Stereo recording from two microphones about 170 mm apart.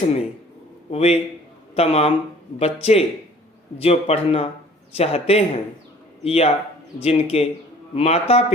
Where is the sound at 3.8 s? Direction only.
35° left (ahead or behind).